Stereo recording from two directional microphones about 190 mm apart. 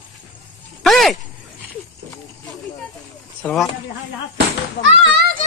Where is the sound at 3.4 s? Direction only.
5° left (ahead or behind).